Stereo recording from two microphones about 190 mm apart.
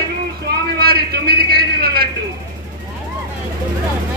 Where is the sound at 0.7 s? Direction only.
55° right (ahead or behind).